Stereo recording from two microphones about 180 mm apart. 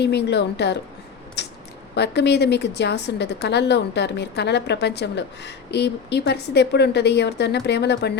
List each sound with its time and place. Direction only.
0.0 s a woman's voice: 65° left (ahead or behind)
1.4 s a sound: 70° left (ahead or behind)
2.0 s a woman's voice: 70° left (ahead or behind)